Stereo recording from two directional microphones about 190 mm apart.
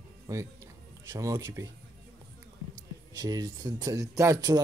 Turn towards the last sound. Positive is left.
turn(degrees=-20)  # may be behind; listen again after turning